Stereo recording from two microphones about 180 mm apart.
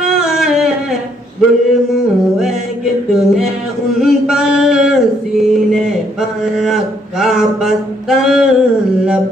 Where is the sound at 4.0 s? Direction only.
Centre (ahead or behind).